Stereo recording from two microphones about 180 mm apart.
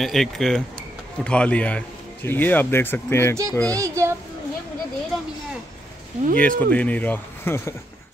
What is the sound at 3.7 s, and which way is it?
Speech, 15° right (ahead or behind).